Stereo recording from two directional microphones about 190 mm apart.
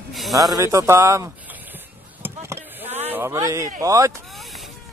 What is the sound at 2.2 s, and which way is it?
Chop, 15° right (ahead or behind).